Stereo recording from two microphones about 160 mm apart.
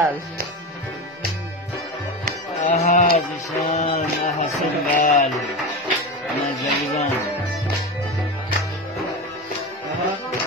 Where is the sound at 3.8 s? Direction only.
50° left (ahead or behind).